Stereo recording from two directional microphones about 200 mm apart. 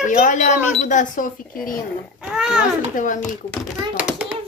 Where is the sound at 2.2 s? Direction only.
5° right (ahead or behind).